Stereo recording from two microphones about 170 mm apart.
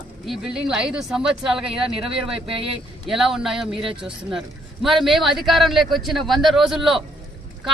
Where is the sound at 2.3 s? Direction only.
35° right (ahead or behind).